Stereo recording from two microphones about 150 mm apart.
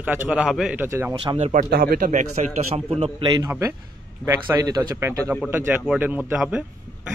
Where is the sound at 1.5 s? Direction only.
75° right (ahead or behind).